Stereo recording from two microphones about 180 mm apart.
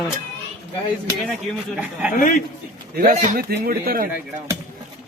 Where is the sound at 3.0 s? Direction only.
45° right (ahead or behind).